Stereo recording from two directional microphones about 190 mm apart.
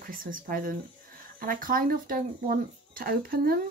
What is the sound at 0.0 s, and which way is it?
Speech, 45° right (ahead or behind).